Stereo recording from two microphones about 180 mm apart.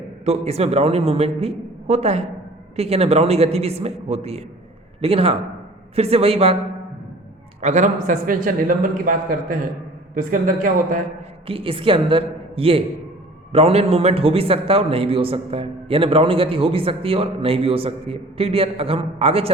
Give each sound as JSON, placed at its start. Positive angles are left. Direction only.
{"t": 0.3, "sound": "a man's voice", "side_deg": -35}
{"t": 7.6, "sound": "a man's voice", "side_deg": -40}
{"t": 11.4, "sound": "a woman's voice", "side_deg": -30}